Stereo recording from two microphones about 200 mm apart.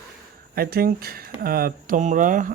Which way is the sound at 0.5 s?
50° right (ahead or behind).